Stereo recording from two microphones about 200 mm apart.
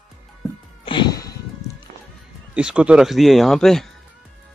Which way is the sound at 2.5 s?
5° right (ahead or behind).